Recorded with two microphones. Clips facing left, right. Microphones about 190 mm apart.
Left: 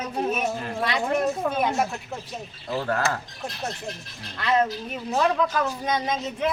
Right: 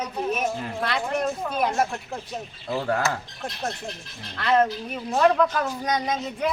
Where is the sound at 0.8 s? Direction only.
5° left (ahead or behind).